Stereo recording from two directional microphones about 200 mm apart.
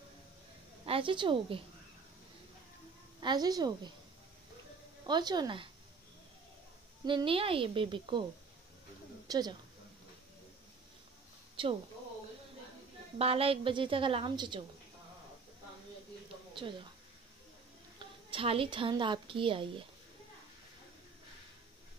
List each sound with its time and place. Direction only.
0.8 s a woman's voice: 25° right (ahead or behind)
3.2 s a woman's voice: 20° right (ahead or behind)
5.0 s a woman's voice: 20° right (ahead or behind)
7.1 s a woman's voice: 25° right (ahead or behind)
9.3 s a woman's voice: 20° right (ahead or behind)
11.6 s speech: 25° right (ahead or behind)
13.2 s a woman's voice: 30° right (ahead or behind)
17.9 s a woman's voice: 25° right (ahead or behind)